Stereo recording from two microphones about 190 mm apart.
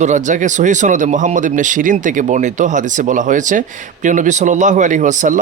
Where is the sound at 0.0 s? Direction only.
40° right (ahead or behind).